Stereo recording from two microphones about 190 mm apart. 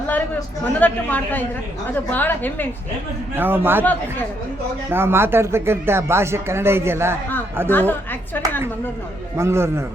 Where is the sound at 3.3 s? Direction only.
10° right (ahead or behind).